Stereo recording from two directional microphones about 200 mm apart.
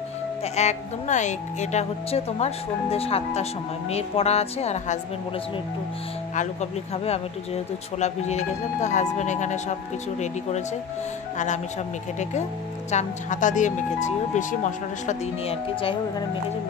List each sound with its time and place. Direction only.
0.4 s speech: 35° left (ahead or behind)
6.3 s speech: 35° left (ahead or behind)
11.3 s speech: 35° left (ahead or behind)
12.9 s speech: 40° left (ahead or behind)